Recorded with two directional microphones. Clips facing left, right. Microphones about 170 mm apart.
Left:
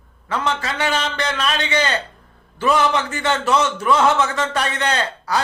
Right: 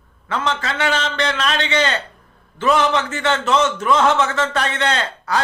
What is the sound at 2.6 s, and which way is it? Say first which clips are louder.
A man's voice: right 1 dB; 10° left (ahead or behind).